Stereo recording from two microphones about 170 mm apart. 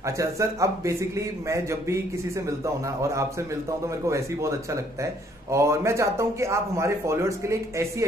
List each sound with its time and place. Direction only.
0.0 s a man's voice: 20° right (ahead or behind)